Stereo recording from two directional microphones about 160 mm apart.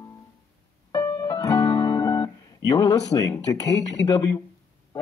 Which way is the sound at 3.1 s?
20° left (ahead or behind).